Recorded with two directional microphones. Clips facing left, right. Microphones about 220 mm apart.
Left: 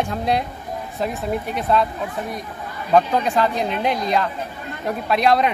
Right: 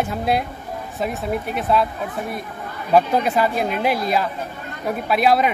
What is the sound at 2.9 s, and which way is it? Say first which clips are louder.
A woman's voice: even; 10° right (ahead or behind).